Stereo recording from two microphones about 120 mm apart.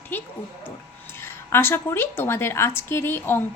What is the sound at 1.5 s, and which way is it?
A woman's voice, 20° left (ahead or behind).